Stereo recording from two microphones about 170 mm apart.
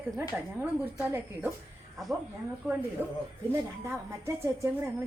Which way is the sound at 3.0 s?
10° right (ahead or behind).